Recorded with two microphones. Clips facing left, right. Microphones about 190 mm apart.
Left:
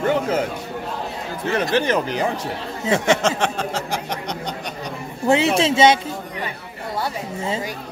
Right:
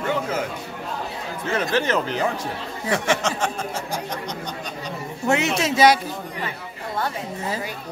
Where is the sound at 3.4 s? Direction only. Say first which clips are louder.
Left 3 dB; 75° left (ahead or behind).